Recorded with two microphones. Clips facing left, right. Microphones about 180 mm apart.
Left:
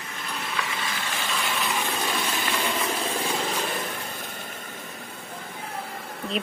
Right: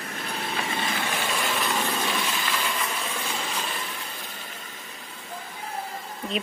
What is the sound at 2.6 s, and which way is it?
Vehicle, 35° left (ahead or behind).